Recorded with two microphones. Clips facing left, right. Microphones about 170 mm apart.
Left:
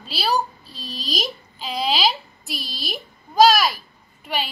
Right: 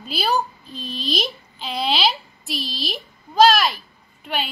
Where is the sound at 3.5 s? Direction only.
Centre (ahead or behind).